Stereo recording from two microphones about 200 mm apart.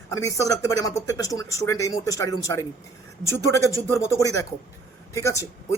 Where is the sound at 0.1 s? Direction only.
15° left (ahead or behind).